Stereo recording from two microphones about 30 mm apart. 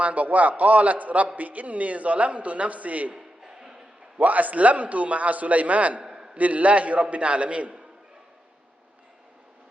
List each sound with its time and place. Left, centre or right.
0.0 s a man's voice: right
3.4 s music: centre
4.2 s a man's voice: right
6.0 s a sound: right
6.3 s a man's voice: right